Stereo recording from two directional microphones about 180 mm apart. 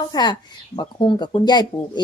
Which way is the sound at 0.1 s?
20° left (ahead or behind).